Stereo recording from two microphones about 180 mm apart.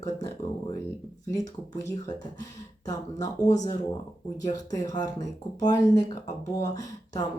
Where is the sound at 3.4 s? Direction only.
20° left (ahead or behind).